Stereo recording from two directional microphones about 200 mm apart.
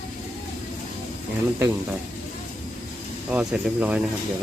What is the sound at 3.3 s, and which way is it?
Speech, 5° right (ahead or behind).